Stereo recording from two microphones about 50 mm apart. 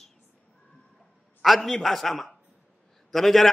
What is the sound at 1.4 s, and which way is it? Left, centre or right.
A man's voice, centre.